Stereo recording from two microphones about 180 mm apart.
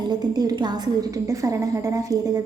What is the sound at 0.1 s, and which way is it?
A woman's voice, 20° right (ahead or behind).